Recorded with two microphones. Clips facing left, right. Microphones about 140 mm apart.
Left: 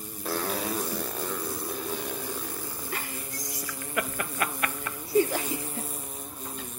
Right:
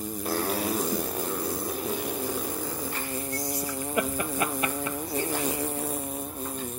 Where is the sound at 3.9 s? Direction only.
20° right (ahead or behind).